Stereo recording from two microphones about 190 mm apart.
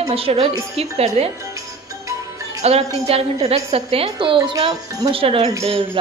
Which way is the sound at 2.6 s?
35° right (ahead or behind).